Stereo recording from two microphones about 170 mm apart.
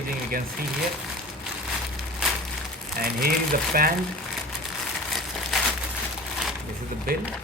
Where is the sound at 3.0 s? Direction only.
60° right (ahead or behind).